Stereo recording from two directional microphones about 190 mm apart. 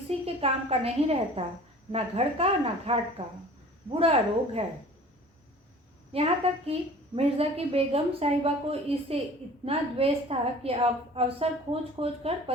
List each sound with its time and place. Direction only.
0.1 s a woman's voice: 30° right (ahead or behind)
6.1 s a woman's voice: 30° right (ahead or behind)